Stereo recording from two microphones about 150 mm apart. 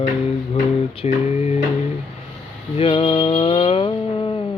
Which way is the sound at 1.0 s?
45° left (ahead or behind).